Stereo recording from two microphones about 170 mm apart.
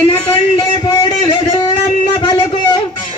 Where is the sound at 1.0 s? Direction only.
25° left (ahead or behind).